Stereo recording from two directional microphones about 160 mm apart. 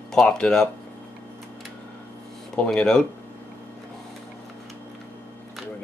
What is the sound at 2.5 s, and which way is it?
Speech, 5° left (ahead or behind).